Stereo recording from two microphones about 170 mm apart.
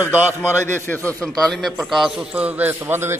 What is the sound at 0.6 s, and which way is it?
A man's voice, 15° left (ahead or behind).